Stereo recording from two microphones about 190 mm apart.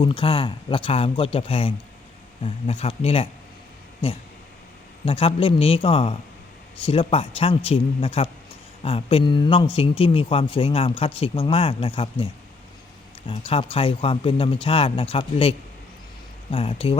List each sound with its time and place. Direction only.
0.0 s a man's voice: 25° left (ahead or behind)
5.0 s a man's voice: 30° left (ahead or behind)